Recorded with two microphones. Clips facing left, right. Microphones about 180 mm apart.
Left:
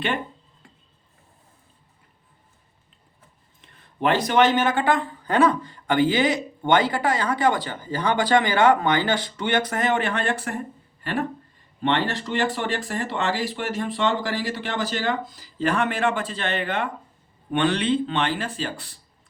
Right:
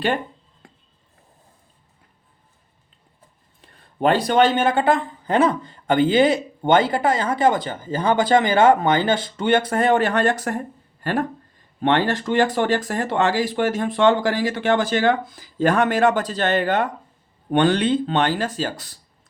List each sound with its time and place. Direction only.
3.6 s speech: 35° right (ahead or behind)